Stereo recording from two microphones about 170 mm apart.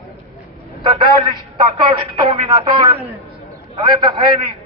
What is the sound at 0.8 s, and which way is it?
A man's voice, 25° right (ahead or behind).